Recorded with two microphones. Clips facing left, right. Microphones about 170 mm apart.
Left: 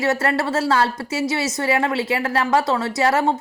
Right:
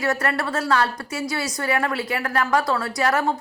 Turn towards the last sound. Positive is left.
turn(degrees=25)  # may be behind; listen again after turning